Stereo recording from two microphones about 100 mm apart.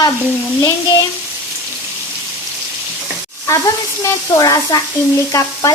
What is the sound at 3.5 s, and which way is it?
Frying, 30° left (ahead or behind).